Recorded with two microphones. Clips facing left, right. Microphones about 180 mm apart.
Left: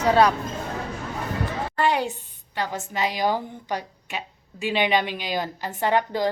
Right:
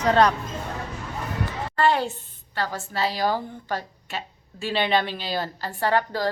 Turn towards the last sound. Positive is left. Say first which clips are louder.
# left 1 dB
turn(degrees=20)  # may be behind; listen again after turning